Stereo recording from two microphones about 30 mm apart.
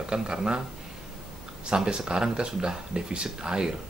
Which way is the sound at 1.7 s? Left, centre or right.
Right.